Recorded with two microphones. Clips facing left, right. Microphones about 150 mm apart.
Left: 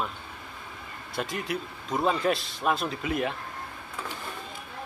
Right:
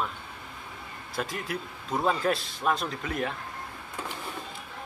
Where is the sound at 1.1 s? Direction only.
Centre (ahead or behind).